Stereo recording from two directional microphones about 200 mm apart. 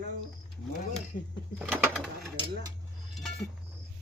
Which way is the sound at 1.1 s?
40° left (ahead or behind).